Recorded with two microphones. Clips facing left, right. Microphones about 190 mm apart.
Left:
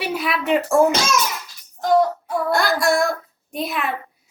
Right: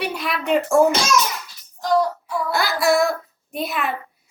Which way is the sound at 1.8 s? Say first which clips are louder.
Left 2 dB; 55° left (ahead or behind).